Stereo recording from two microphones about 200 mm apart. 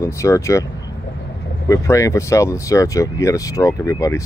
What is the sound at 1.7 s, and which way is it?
Speech, 15° left (ahead or behind).